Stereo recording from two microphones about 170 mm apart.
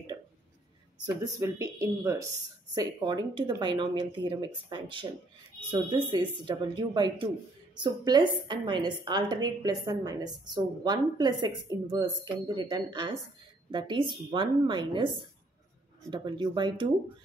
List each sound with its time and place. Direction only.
1.2 s a woman's voice: 20° right (ahead or behind)